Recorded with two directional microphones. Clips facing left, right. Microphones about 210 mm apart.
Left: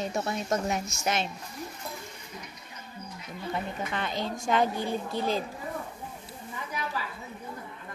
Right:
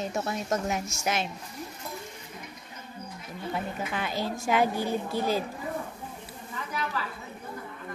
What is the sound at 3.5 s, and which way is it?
A woman's voice, 5° right (ahead or behind).